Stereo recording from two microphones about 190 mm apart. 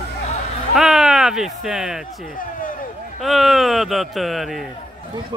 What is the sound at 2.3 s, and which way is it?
Speech, 45° left (ahead or behind).